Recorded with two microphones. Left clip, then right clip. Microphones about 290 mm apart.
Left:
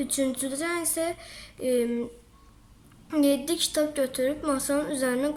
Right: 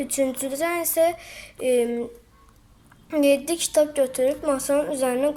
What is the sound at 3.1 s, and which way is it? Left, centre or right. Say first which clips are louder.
A woman's voice: right 5 dB; centre.